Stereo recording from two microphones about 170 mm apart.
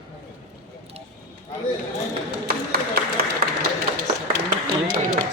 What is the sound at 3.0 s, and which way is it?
Applause, 65° right (ahead or behind).